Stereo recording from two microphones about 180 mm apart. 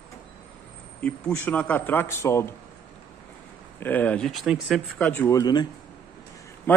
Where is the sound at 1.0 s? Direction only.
10° left (ahead or behind).